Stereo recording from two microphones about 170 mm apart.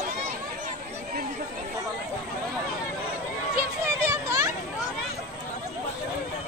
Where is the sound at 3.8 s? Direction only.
15° right (ahead or behind).